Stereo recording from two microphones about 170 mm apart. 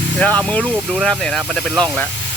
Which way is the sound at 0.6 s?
5° right (ahead or behind).